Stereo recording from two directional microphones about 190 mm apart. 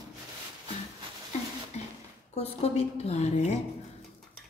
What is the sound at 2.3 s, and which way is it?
Speech, 35° left (ahead or behind).